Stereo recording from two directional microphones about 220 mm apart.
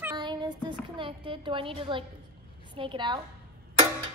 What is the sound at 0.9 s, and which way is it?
A woman's voice, 25° right (ahead or behind).